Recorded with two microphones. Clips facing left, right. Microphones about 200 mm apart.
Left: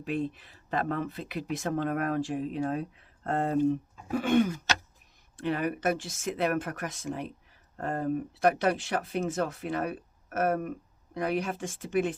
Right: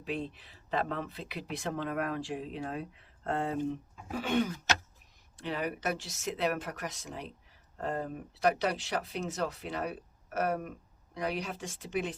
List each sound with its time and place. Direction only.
0.0 s speech: 50° left (ahead or behind)